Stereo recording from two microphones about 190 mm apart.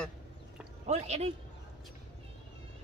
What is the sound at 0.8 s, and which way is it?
Speech, 35° right (ahead or behind).